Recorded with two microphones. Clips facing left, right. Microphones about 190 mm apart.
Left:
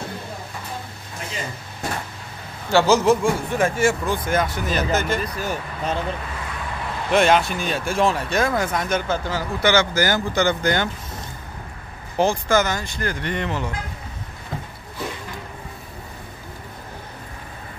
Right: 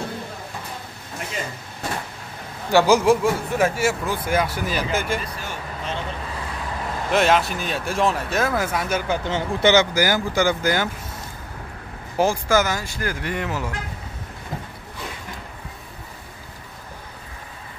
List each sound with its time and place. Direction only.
2.7 s speech: 10° right (ahead or behind)
5.4 s speech: 40° left (ahead or behind)
7.1 s speech: centre (ahead or behind)
12.2 s speech: 5° right (ahead or behind)